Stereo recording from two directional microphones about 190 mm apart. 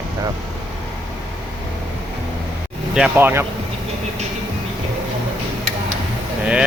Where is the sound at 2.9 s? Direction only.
10° right (ahead or behind).